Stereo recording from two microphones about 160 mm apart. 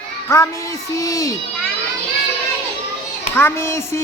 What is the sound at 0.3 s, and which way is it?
Music, 20° left (ahead or behind).